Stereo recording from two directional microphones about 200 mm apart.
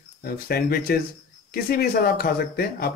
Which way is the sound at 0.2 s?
50° left (ahead or behind).